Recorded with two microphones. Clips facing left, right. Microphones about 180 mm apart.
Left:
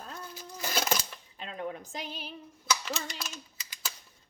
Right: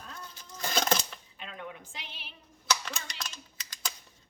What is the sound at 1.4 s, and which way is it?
Speech, 35° left (ahead or behind).